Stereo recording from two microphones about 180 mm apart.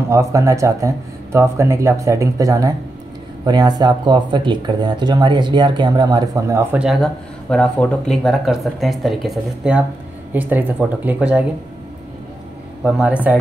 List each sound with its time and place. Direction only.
0.1 s speech: 15° right (ahead or behind)
6.8 s speech: centre (ahead or behind)
12.8 s speech: 5° right (ahead or behind)